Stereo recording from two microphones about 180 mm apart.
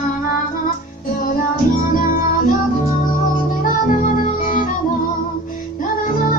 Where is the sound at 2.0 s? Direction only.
50° left (ahead or behind).